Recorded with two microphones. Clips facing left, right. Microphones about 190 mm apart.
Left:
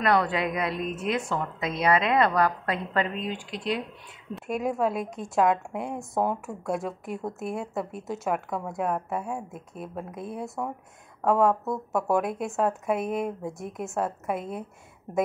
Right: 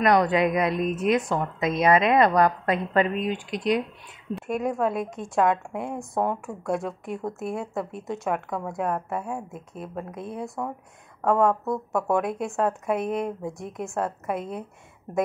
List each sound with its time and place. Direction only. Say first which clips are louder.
0.0 s a woman's voice: right 4 dB; 15° right (ahead or behind)
4.4 s speech: right 1 dB; centre (ahead or behind)